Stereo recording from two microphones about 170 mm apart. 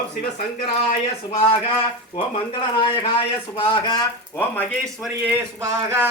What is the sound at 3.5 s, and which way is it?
Mantra, 30° left (ahead or behind).